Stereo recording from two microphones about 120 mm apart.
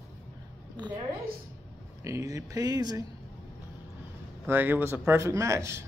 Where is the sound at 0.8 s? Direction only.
35° right (ahead or behind).